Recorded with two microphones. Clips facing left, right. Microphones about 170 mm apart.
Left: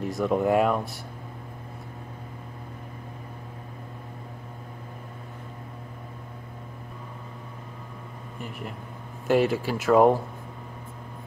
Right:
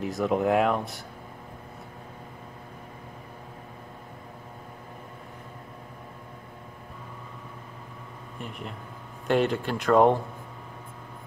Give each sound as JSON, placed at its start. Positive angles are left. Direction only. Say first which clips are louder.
{"t": 0.0, "sound": "speech", "louder": "left 1 dB", "side_deg": 0}
{"t": 8.4, "sound": "speech", "louder": "left 1 dB", "side_deg": 0}